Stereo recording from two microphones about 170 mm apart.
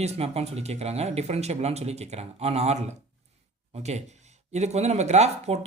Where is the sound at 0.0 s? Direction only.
40° right (ahead or behind).